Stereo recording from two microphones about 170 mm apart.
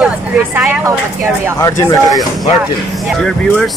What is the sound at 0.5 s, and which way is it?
Speech, 10° right (ahead or behind).